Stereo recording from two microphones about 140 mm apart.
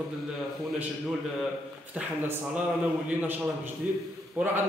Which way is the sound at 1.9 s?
10° right (ahead or behind).